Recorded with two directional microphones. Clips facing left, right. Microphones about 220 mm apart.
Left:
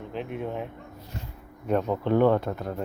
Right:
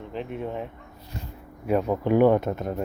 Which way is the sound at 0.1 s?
Centre (ahead or behind).